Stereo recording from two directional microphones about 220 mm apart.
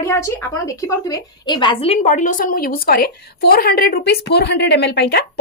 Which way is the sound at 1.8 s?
30° left (ahead or behind).